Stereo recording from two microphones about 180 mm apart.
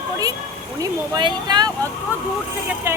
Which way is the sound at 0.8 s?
25° right (ahead or behind).